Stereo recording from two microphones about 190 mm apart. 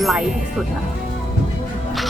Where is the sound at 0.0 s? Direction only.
Centre (ahead or behind).